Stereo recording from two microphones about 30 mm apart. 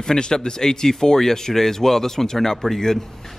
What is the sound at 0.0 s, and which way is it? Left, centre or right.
Speech, left.